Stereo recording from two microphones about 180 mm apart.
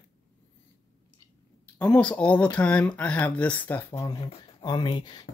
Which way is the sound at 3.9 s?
20° left (ahead or behind).